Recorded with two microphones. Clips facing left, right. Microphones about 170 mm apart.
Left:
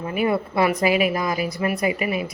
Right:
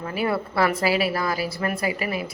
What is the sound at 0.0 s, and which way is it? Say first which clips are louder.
Speech: left 3 dB; 20° left (ahead or behind).